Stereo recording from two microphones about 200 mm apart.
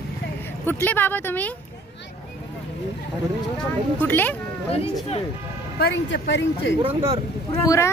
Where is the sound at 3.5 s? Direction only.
10° left (ahead or behind).